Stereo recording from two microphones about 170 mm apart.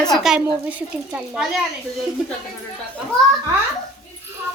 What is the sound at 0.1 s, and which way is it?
A child's voice, centre (ahead or behind).